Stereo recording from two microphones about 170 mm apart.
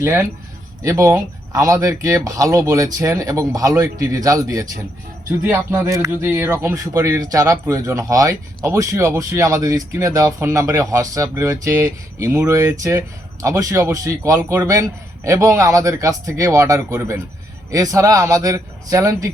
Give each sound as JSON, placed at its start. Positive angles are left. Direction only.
{"t": 0.0, "sound": "speech", "side_deg": -15}